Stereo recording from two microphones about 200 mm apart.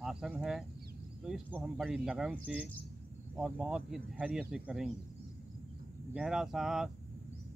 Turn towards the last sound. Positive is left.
turn(degrees=0)  # may be behind; listen again after turning